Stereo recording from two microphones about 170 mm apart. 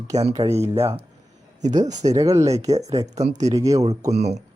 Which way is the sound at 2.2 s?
20° right (ahead or behind).